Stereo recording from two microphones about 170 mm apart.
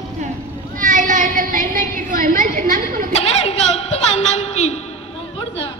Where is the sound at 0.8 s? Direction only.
50° right (ahead or behind).